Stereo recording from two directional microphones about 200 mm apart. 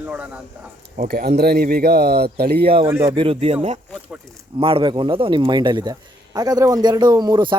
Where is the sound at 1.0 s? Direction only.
50° right (ahead or behind).